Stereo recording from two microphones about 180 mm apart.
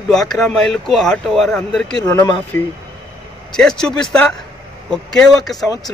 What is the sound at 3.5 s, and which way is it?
Speech, 5° left (ahead or behind).